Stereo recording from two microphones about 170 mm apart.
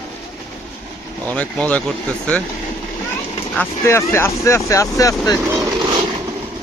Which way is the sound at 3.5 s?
10° left (ahead or behind).